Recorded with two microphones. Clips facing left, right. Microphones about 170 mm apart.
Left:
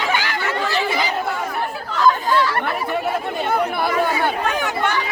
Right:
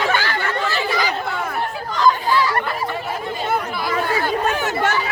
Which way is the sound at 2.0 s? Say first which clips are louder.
Even; centre (ahead or behind).